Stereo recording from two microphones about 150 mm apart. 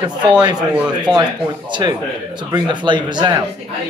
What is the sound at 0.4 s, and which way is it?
Speech, 25° right (ahead or behind).